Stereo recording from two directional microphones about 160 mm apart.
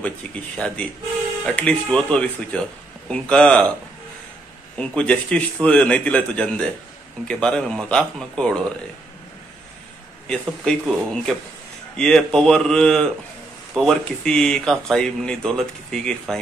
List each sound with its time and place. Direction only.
0.6 s a man's voice: 5° left (ahead or behind)
4.7 s a man's voice: 5° left (ahead or behind)
10.2 s speech: 5° left (ahead or behind)